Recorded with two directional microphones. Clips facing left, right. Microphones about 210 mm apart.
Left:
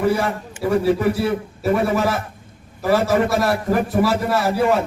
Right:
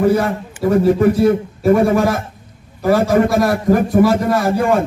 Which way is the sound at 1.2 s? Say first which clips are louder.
Right 7 dB; 45° right (ahead or behind).